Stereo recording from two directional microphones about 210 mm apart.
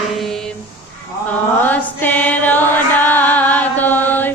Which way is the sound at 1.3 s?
10° left (ahead or behind).